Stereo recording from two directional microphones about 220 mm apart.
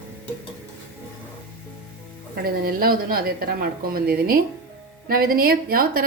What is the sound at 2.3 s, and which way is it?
A woman's voice, 45° right (ahead or behind).